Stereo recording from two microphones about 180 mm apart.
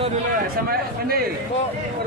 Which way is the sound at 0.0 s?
50° right (ahead or behind).